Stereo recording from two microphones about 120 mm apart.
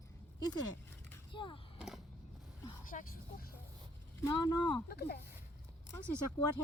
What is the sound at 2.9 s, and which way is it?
Speech, 90° left.